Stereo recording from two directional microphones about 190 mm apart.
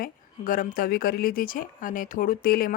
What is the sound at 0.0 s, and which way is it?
Speech, 45° left (ahead or behind).